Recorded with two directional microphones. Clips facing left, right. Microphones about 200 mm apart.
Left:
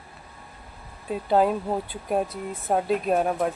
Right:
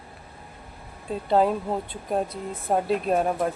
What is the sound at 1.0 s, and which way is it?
Speech, centre (ahead or behind).